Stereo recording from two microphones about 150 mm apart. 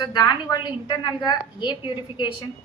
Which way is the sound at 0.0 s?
30° left (ahead or behind).